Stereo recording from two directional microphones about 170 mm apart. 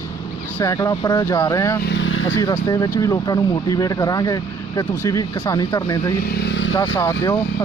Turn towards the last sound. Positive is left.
turn(degrees=20)  # may be behind; listen again after turning